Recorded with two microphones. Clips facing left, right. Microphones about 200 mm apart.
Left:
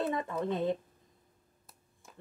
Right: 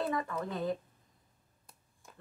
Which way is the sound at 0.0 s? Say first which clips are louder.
Left 2 dB; 25° left (ahead or behind).